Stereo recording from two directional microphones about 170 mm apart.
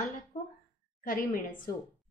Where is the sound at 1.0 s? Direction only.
55° left (ahead or behind).